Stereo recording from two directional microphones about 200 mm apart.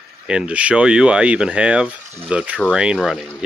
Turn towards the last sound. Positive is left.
turn(degrees=-5)  # may be behind; listen again after turning